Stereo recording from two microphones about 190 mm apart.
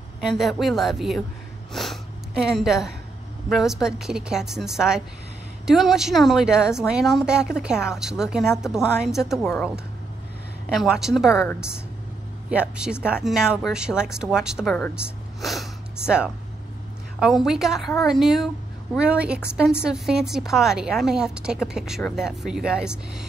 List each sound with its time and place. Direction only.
0.2 s a woman's voice: centre (ahead or behind)
1.7 s snort: centre (ahead or behind)
3.4 s a woman's voice: centre (ahead or behind)
10.7 s a woman's voice: 5° right (ahead or behind)
12.4 s a woman's voice: 5° right (ahead or behind)